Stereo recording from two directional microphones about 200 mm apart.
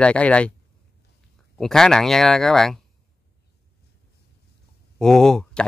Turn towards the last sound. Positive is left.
turn(degrees=5)  # may be behind; listen again after turning